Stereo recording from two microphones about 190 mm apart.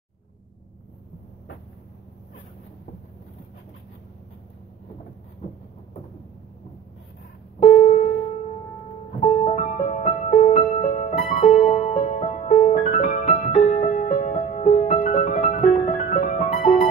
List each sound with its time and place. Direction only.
7.6 s keyboard: 40° left (ahead or behind)
9.2 s music: 35° left (ahead or behind)